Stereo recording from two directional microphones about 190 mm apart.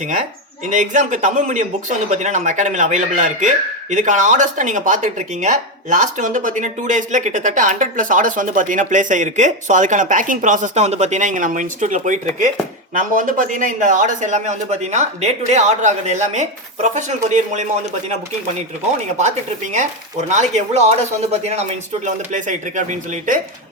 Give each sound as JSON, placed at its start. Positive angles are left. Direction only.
{"t": 0.7, "sound": "speech", "side_deg": -40}
{"t": 19.7, "sound": "speech", "side_deg": -40}